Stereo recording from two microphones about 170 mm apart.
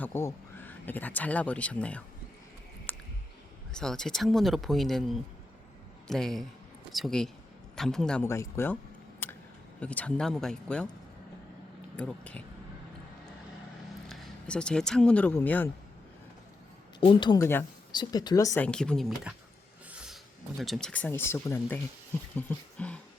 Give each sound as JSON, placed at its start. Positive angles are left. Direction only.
{"t": 0.0, "sound": "speech", "side_deg": 15}
{"t": 2.9, "sound": "a sound", "side_deg": 10}
{"t": 3.7, "sound": "speech", "side_deg": 5}
{"t": 8.2, "sound": "speech", "side_deg": 15}
{"t": 9.2, "sound": "a sound", "side_deg": 15}
{"t": 9.8, "sound": "speech", "side_deg": 10}
{"t": 11.9, "sound": "speech", "side_deg": 5}
{"t": 14.1, "sound": "speech", "side_deg": 5}
{"t": 17.0, "sound": "speech", "side_deg": 30}
{"t": 17.4, "sound": "speech", "side_deg": 15}
{"t": 17.9, "sound": "speech", "side_deg": 25}
{"t": 18.6, "sound": "speech", "side_deg": 5}
{"t": 19.9, "sound": "music", "side_deg": -5}
{"t": 20.6, "sound": "speech", "side_deg": 0}